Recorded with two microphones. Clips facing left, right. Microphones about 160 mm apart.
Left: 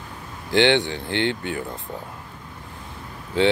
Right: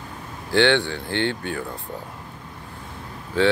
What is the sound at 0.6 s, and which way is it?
Speech, 20° left (ahead or behind).